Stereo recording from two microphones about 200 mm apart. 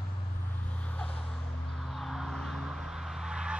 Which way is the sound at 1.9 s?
Centre (ahead or behind).